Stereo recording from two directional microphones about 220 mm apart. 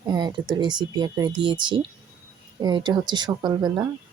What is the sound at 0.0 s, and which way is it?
Speech, 15° right (ahead or behind).